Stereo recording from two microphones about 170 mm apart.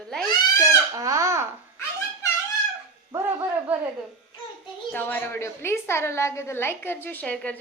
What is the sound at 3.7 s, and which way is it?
Speech, 10° right (ahead or behind).